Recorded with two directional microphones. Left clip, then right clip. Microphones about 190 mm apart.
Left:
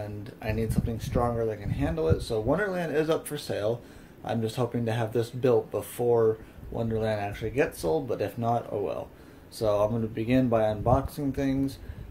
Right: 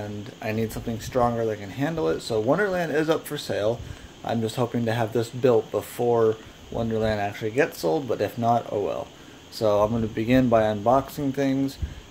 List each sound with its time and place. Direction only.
0.4 s speech: 20° right (ahead or behind)